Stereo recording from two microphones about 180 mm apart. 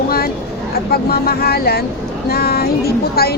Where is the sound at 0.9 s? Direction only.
60° left (ahead or behind).